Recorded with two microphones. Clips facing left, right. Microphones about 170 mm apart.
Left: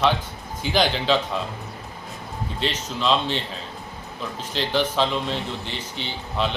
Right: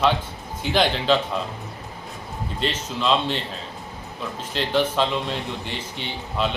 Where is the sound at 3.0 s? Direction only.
Centre (ahead or behind).